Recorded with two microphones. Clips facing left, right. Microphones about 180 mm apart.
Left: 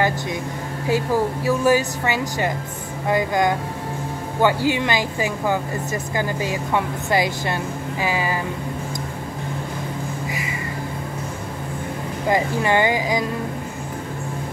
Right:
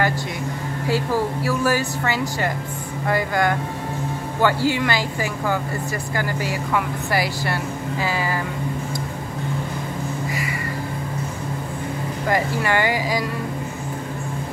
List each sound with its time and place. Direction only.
0.8 s speech: 15° left (ahead or behind)
12.3 s speech: 20° left (ahead or behind)